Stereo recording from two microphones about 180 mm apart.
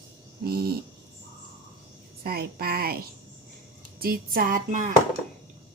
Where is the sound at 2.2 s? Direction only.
60° right (ahead or behind).